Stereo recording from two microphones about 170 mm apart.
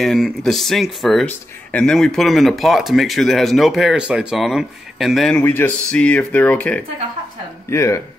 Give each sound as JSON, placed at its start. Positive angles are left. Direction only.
{"t": 0.0, "sound": "speech", "side_deg": 0}
{"t": 5.4, "sound": "speech", "side_deg": 15}